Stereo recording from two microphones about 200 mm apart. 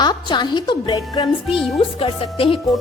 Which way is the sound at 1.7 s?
30° left (ahead or behind).